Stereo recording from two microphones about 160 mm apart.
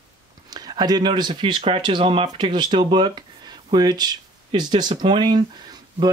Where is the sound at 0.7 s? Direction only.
25° right (ahead or behind); by 2.5 s 40° right (ahead or behind).